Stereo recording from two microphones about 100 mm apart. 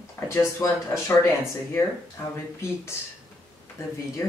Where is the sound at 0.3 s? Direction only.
25° left (ahead or behind).